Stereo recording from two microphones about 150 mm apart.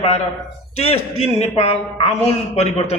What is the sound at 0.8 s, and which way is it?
A man's voice, 45° left (ahead or behind).